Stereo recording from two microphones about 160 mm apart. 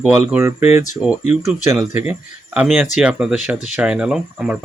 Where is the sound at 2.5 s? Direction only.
10° right (ahead or behind).